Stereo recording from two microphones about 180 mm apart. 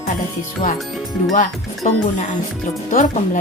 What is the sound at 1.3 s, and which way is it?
Music, 45° left (ahead or behind).